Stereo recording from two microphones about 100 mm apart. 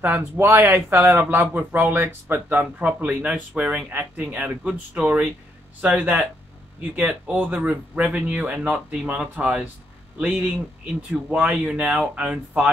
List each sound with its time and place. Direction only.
0.0 s speech: 20° right (ahead or behind)